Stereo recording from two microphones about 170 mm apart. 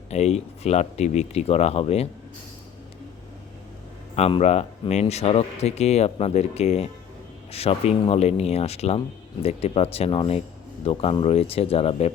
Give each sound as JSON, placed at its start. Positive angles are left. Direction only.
{"t": 0.1, "sound": "speech", "side_deg": 40}
{"t": 4.1, "sound": "speech", "side_deg": 35}